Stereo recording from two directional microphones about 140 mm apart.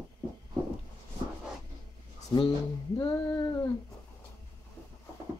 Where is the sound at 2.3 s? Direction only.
30° left (ahead or behind).